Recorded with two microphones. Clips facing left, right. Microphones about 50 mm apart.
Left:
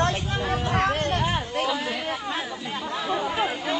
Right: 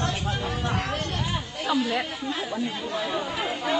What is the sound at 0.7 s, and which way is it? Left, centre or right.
Chatter, left.